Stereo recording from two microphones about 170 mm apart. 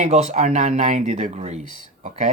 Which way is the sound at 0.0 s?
40° right (ahead or behind).